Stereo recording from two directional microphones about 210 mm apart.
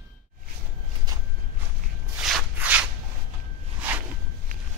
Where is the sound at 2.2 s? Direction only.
Centre (ahead or behind).